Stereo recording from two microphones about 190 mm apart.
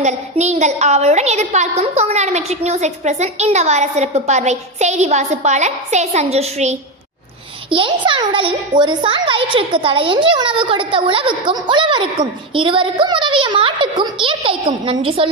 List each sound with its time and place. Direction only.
0.0 s a woman's voice: 35° right (ahead or behind)